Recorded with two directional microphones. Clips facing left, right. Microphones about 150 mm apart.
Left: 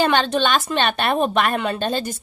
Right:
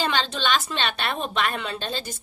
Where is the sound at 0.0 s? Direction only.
55° left (ahead or behind).